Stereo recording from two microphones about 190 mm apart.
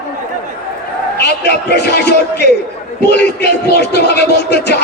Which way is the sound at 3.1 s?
60° left (ahead or behind).